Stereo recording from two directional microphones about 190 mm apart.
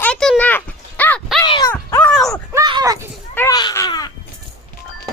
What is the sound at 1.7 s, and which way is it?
Dog, 10° left (ahead or behind).